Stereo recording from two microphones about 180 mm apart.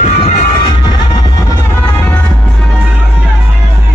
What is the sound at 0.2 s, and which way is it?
Music, 25° left (ahead or behind).